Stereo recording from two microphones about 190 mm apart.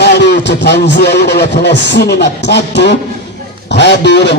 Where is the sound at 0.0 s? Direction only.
60° left (ahead or behind).